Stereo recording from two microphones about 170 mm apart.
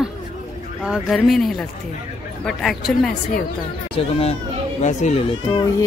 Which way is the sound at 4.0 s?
35° left (ahead or behind).